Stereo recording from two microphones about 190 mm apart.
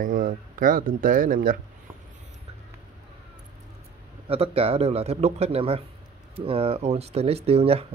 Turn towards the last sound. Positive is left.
turn(degrees=-30)  # may be behind; listen again after turning